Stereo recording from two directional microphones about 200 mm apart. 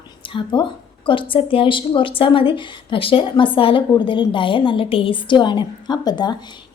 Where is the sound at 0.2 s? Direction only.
25° left (ahead or behind).